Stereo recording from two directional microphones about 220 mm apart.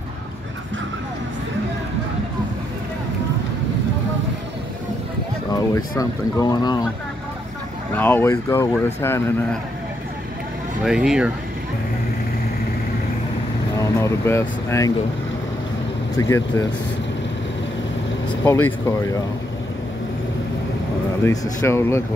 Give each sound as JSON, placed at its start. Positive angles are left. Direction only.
{"t": 5.9, "sound": "speech", "side_deg": 15}
{"t": 7.9, "sound": "speech", "side_deg": 10}
{"t": 10.8, "sound": "speech", "side_deg": -5}
{"t": 13.7, "sound": "speech", "side_deg": 15}
{"t": 16.2, "sound": "speech", "side_deg": 15}
{"t": 18.4, "sound": "speech", "side_deg": 10}
{"t": 21.2, "sound": "speech", "side_deg": 15}